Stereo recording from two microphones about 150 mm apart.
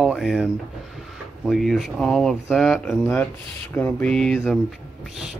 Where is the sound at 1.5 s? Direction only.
Centre (ahead or behind).